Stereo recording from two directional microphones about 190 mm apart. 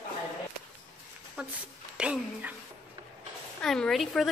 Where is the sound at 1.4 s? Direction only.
5° right (ahead or behind).